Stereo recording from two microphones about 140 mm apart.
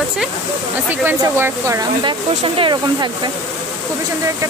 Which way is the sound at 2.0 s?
40° right (ahead or behind).